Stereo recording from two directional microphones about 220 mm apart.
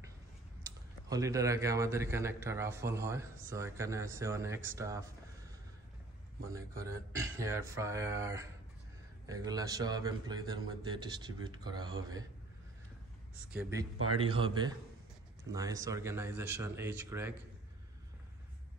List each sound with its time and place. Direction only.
0.7 s a man's voice: 15° right (ahead or behind)
6.5 s a man's voice: 15° right (ahead or behind)
13.5 s a man's voice: 10° right (ahead or behind)
14.2 s a man's voice: 25° right (ahead or behind)